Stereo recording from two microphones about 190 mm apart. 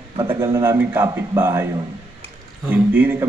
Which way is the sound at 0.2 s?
30° right (ahead or behind).